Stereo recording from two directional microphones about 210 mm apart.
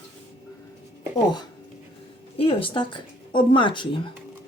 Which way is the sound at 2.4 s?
25° left (ahead or behind).